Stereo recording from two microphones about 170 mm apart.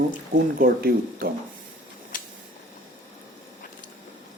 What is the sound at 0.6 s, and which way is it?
Speech, 60° right (ahead or behind).